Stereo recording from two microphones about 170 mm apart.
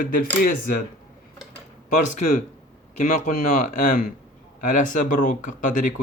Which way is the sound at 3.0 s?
45° left (ahead or behind).